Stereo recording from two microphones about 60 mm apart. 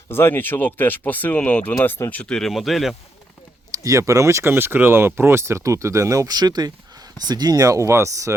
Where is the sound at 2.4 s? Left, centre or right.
Centre.